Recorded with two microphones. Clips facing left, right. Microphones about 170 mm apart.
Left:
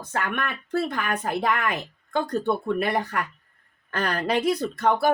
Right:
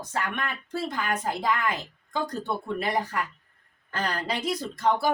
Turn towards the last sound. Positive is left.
turn(degrees=60)  # may be behind; listen again after turning